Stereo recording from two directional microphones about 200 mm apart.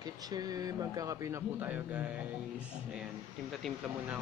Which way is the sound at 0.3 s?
20° right (ahead or behind).